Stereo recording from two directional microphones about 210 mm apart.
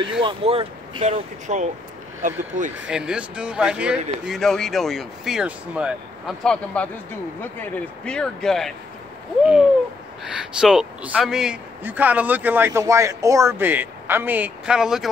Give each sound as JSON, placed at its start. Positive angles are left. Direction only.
{"t": 0.0, "sound": "speech", "side_deg": -25}
{"t": 2.9, "sound": "a man's voice", "side_deg": -5}